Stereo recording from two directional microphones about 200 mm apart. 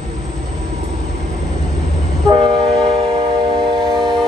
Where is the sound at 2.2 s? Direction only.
25° right (ahead or behind).